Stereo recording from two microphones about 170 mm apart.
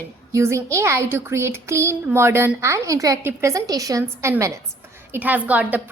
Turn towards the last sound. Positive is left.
turn(degrees=-10)  # may be behind; listen again after turning